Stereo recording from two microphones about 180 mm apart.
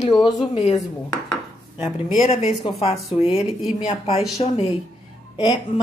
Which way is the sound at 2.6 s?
35° left (ahead or behind).